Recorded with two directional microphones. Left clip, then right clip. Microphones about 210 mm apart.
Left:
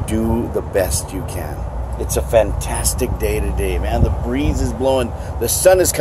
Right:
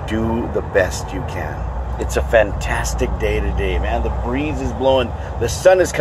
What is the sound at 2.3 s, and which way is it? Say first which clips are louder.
Speech: even; 10° left (ahead or behind).